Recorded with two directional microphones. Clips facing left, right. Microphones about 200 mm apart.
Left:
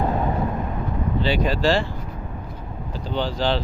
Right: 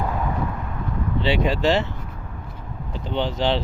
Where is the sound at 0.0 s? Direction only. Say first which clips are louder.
Left 3 dB; 30° left (ahead or behind).